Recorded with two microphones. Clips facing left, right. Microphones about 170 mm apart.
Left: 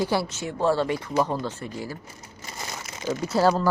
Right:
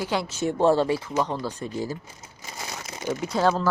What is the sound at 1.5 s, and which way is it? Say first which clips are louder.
Speech: right 1 dB; 15° right (ahead or behind).